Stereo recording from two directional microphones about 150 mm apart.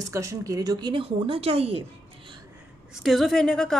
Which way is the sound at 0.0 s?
20° right (ahead or behind).